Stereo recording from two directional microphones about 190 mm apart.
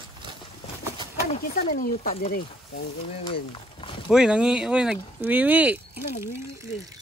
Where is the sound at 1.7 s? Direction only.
50° left (ahead or behind).